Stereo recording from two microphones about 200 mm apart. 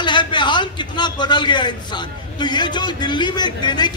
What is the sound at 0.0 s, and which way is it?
A man's voice, 25° left (ahead or behind).